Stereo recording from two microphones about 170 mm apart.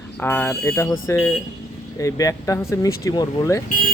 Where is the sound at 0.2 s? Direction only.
10° left (ahead or behind).